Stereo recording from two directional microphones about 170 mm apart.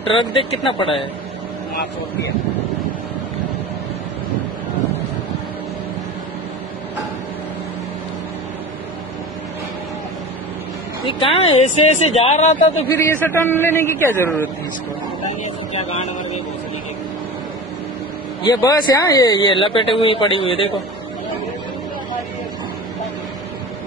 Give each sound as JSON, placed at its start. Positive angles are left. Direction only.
{"t": 0.1, "sound": "speech", "side_deg": 30}
{"t": 11.1, "sound": "speech", "side_deg": 30}
{"t": 12.9, "sound": "a man's voice", "side_deg": 15}
{"t": 15.8, "sound": "speech", "side_deg": 40}
{"t": 18.4, "sound": "speech", "side_deg": 20}